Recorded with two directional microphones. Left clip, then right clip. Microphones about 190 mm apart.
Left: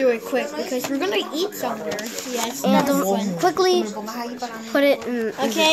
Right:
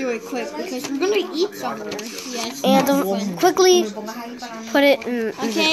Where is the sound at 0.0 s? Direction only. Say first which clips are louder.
Left 5 dB; 35° left (ahead or behind).